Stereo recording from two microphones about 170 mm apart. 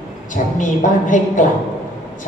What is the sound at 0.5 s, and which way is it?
Speech, 50° left (ahead or behind).